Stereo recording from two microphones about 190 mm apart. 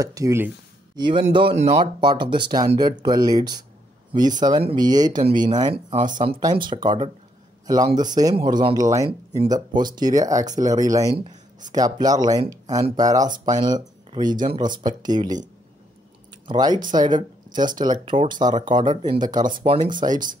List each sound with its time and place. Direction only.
0.0 s speech: 15° right (ahead or behind); by 2.0 s 35° right (ahead or behind)
2.0 s speech: 25° right (ahead or behind)
16.4 s speech: 20° right (ahead or behind)
18.1 s speech: 40° right (ahead or behind)
18.4 s speech: 20° right (ahead or behind)